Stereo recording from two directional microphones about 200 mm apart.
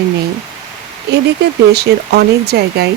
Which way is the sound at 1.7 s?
55° right (ahead or behind).